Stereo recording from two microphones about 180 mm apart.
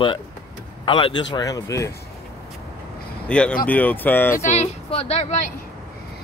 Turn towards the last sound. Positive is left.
turn(degrees=40)  # may be behind; listen again after turning